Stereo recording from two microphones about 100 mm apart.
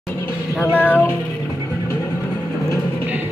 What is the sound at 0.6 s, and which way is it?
Child singing, 15° left (ahead or behind).